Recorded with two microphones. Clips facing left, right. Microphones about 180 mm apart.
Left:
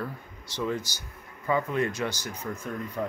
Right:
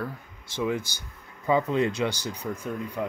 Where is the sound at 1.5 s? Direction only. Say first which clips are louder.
Right 3 dB; 20° right (ahead or behind).